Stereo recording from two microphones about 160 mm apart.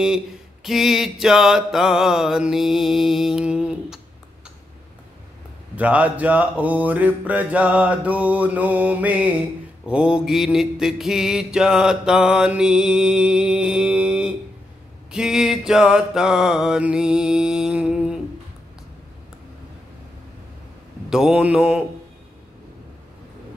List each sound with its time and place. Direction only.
0.7 s mantra: centre (ahead or behind)
5.8 s mantra: 10° right (ahead or behind)
21.1 s mantra: 5° right (ahead or behind)